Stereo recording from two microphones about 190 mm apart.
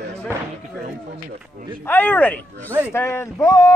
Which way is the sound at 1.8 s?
10° left (ahead or behind).